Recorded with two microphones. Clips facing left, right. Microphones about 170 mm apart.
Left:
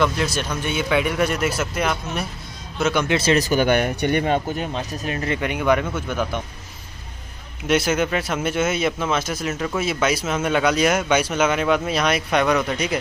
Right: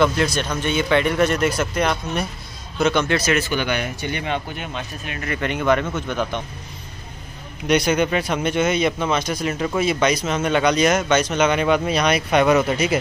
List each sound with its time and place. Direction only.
0.0 s speech: 5° left (ahead or behind)
3.2 s speech: 35° left (ahead or behind); by 4.2 s 55° left (ahead or behind)
4.2 s speech: 40° left (ahead or behind)
5.4 s speech: 10° left (ahead or behind)
7.6 s speech: 5° left (ahead or behind)